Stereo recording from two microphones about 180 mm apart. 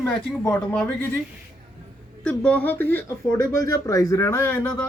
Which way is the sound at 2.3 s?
5° left (ahead or behind).